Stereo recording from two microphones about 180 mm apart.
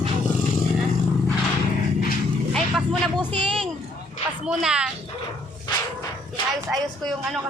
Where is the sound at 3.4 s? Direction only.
30° right (ahead or behind).